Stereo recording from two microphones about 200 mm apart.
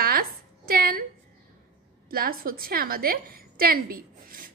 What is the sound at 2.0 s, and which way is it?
A woman's voice, 45° right (ahead or behind).